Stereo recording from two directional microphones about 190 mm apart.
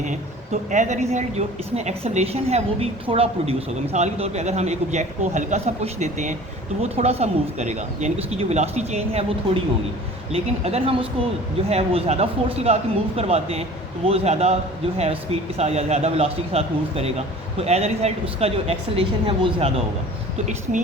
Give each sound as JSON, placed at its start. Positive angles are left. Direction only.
{"t": 0.0, "sound": "a man's voice", "side_deg": -40}
{"t": 10.3, "sound": "a man's voice", "side_deg": -30}